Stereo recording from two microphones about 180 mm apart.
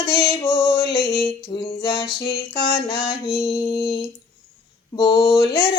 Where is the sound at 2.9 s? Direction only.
30° left (ahead or behind).